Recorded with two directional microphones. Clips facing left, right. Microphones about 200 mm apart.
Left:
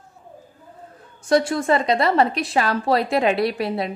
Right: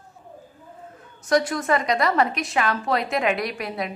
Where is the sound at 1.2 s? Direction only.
30° left (ahead or behind).